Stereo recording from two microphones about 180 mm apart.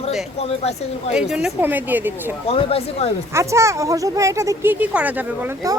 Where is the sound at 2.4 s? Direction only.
35° left (ahead or behind).